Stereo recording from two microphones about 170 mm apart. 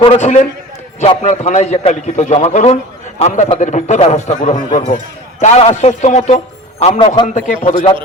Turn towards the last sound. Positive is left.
turn(degrees=40)  # may be behind; listen again after turning